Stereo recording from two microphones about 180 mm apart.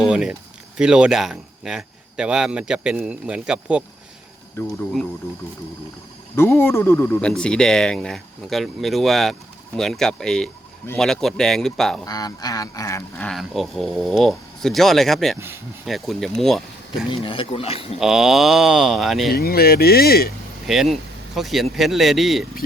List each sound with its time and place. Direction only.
0.0 s speech: 5° right (ahead or behind)
4.6 s speech: 15° left (ahead or behind)
6.3 s speech: 15° left (ahead or behind)
12.0 s speech: 20° left (ahead or behind); by 17.1 s centre (ahead or behind)
17.1 s speech: 30° left (ahead or behind)
18.0 s speech: 5° right (ahead or behind)
19.3 s speech: 60° left (ahead or behind)
20.7 s speech: centre (ahead or behind)